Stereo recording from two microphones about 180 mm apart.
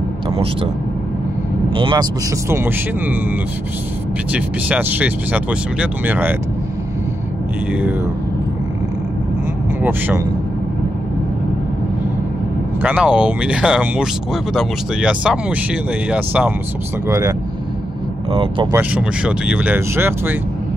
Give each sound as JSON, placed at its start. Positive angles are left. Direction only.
{"t": 1.7, "sound": "speech", "side_deg": -25}
{"t": 2.5, "sound": "speech", "side_deg": -10}
{"t": 4.3, "sound": "speech", "side_deg": -10}
{"t": 9.8, "sound": "speech", "side_deg": -10}
{"t": 12.8, "sound": "speech", "side_deg": -5}
{"t": 17.1, "sound": "speech", "side_deg": -20}
{"t": 18.3, "sound": "speech", "side_deg": -30}
{"t": 18.7, "sound": "speech", "side_deg": -10}